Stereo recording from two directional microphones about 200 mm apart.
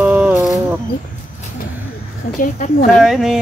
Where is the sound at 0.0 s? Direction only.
5° right (ahead or behind).